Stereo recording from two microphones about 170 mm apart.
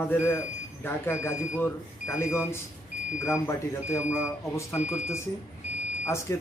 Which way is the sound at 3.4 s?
15° left (ahead or behind).